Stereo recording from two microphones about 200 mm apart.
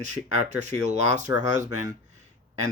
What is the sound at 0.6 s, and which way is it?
Speech, 35° right (ahead or behind).